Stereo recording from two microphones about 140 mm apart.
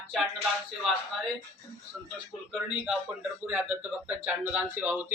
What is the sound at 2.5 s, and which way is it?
A man's voice, 5° right (ahead or behind).